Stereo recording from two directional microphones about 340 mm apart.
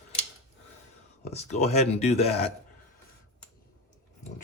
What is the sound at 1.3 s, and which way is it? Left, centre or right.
Speech, centre.